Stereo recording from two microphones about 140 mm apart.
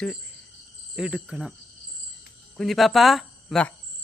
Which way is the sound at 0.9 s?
5° right (ahead or behind).